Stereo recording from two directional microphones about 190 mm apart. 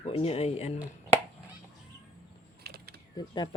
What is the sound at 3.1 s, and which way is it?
Speech, 25° left (ahead or behind).